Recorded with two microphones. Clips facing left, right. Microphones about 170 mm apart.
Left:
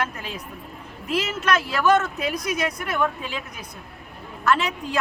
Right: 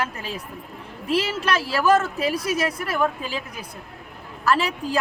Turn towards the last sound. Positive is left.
turn(degrees=-30)  # may be behind; listen again after turning